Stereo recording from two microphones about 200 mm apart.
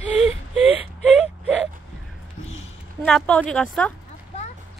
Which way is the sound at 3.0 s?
5° left (ahead or behind).